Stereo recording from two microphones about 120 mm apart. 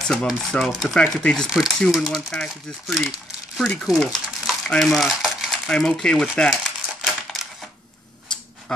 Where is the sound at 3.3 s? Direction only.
5° left (ahead or behind).